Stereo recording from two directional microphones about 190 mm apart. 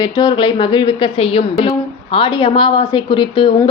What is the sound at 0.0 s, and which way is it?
A woman's voice, 20° left (ahead or behind).